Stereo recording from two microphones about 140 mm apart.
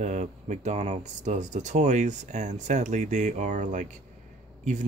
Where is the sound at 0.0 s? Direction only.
55° right (ahead or behind).